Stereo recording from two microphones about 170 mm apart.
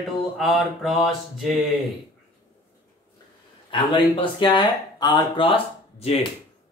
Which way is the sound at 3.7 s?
30° left (ahead or behind).